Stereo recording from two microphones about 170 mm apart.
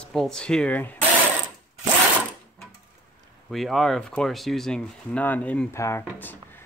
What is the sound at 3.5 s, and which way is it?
Speech, centre (ahead or behind).